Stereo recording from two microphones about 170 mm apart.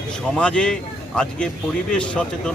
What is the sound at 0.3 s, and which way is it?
A man's voice, 5° left (ahead or behind).